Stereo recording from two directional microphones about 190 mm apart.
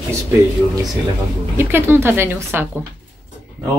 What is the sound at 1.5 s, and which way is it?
A woman's voice, 10° right (ahead or behind).